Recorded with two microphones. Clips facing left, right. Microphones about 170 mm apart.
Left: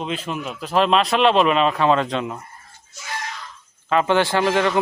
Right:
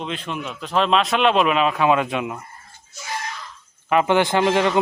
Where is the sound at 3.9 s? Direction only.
15° right (ahead or behind).